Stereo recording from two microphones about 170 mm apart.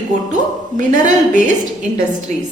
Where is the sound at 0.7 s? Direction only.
45° right (ahead or behind).